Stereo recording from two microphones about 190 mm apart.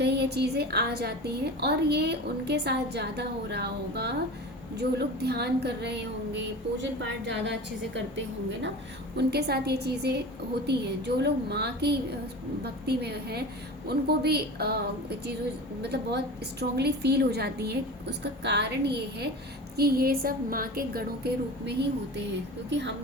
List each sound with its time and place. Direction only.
0.0 s a woman's voice: 60° right (ahead or behind)
9.1 s a woman's voice: 60° right (ahead or behind)
22.7 s a woman's voice: 65° right (ahead or behind)